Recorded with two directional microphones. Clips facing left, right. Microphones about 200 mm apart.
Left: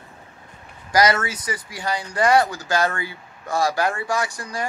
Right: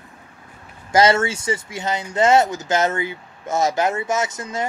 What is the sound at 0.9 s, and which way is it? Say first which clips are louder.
Speech: right 3 dB; 25° right (ahead or behind).